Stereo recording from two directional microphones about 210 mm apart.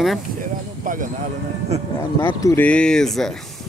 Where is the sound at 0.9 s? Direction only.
40° right (ahead or behind).